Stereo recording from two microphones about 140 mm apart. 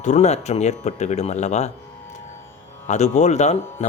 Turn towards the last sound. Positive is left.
turn(degrees=55)  # may be behind; listen again after turning